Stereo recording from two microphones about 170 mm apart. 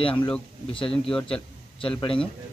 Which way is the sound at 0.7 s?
30° left (ahead or behind).